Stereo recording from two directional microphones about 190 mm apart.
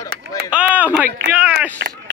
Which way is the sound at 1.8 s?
65° right (ahead or behind).